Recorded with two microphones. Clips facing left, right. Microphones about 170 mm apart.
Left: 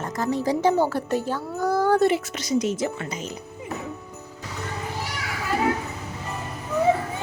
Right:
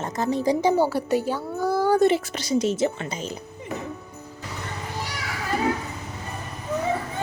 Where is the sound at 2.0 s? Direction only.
30° right (ahead or behind).